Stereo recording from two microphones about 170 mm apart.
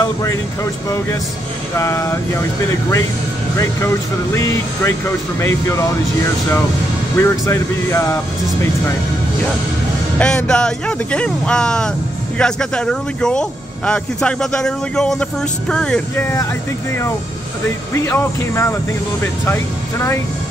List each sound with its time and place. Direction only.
0.0 s speech: 20° left (ahead or behind)
1.8 s speech: 15° left (ahead or behind)
3.5 s speech: 15° left (ahead or behind)
7.2 s speech: 15° left (ahead or behind)
10.1 s speech: 5° left (ahead or behind)
16.2 s speech: 15° left (ahead or behind)
17.9 s speech: 15° left (ahead or behind)